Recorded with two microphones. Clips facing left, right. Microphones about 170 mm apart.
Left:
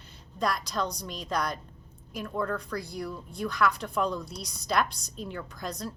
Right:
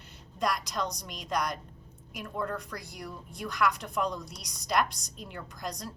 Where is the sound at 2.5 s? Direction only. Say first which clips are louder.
Left 5 dB; 15° right (ahead or behind).